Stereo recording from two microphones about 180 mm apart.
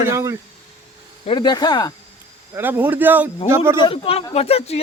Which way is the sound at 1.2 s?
25° left (ahead or behind).